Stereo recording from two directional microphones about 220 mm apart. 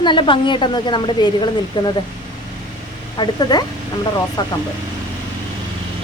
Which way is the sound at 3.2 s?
20° left (ahead or behind).